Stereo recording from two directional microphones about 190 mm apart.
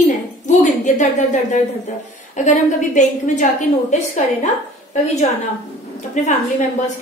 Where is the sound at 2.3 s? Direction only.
40° left (ahead or behind).